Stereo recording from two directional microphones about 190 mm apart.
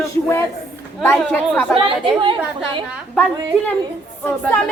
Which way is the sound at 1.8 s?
25° right (ahead or behind).